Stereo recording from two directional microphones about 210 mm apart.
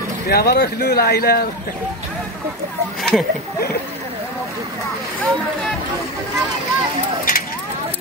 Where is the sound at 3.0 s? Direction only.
Centre (ahead or behind).